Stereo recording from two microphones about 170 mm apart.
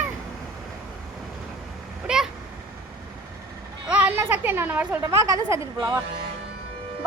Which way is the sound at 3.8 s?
5° right (ahead or behind).